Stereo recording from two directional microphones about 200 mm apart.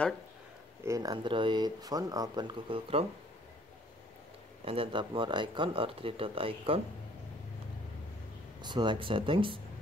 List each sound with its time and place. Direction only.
0.8 s speech: 15° right (ahead or behind)
4.6 s speech: 25° right (ahead or behind)
8.6 s speech: 25° right (ahead or behind)